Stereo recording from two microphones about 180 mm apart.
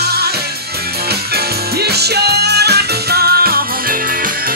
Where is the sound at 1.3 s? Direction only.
65° right (ahead or behind).